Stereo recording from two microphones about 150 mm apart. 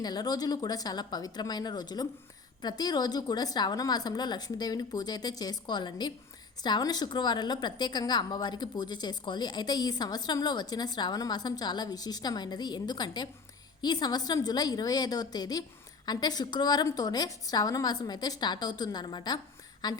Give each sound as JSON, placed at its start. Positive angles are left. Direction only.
{"t": 0.0, "sound": "a woman's voice", "side_deg": 25}